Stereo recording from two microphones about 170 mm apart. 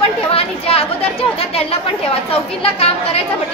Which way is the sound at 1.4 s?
35° left (ahead or behind).